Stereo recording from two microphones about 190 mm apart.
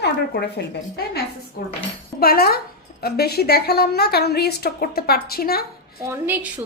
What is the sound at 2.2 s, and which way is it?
A woman's voice, 50° left (ahead or behind).